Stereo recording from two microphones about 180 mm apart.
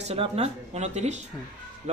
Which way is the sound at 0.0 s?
35° right (ahead or behind).